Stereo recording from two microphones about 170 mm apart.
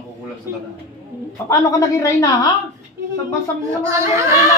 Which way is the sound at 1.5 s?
20° left (ahead or behind).